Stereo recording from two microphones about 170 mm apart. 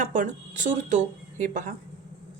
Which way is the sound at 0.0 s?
50° right (ahead or behind).